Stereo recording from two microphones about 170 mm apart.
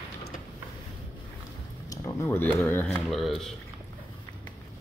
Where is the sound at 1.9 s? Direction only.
10° left (ahead or behind).